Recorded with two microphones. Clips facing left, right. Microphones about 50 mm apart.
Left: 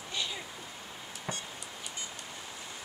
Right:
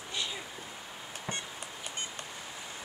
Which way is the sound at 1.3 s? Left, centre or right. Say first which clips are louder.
Right 1 dB; centre.